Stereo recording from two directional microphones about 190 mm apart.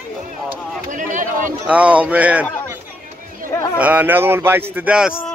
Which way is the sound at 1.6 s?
5° right (ahead or behind).